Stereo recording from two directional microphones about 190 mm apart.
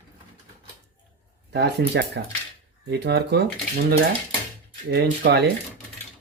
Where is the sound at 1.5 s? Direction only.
60° right (ahead or behind).